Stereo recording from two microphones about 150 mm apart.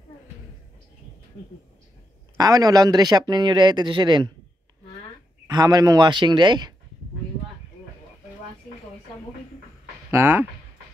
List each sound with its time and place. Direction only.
2.3 s speech: 25° right (ahead or behind)
5.5 s speech: 25° right (ahead or behind)
10.1 s speech: 15° right (ahead or behind)